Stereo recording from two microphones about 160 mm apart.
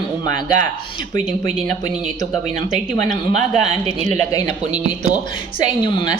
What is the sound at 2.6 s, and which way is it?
Speech, 50° right (ahead or behind).